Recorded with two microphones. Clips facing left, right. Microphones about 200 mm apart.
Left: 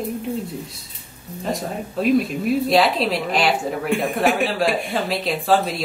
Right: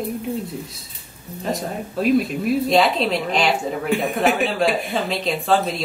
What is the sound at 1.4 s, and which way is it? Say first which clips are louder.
Speech: even; centre (ahead or behind).